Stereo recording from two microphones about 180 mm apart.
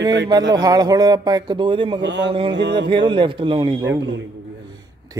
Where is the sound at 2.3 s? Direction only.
30° right (ahead or behind).